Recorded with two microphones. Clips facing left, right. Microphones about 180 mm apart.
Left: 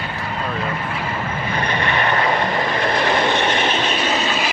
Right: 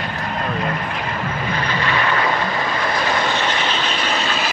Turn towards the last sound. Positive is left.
turn(degrees=25)  # may be behind; listen again after turning